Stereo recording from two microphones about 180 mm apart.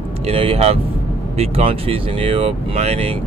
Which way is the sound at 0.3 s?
35° right (ahead or behind).